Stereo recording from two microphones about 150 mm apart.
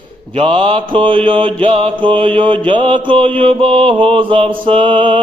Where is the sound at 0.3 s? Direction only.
35° right (ahead or behind).